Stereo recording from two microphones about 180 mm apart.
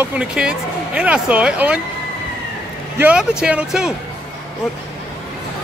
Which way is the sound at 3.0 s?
5° right (ahead or behind).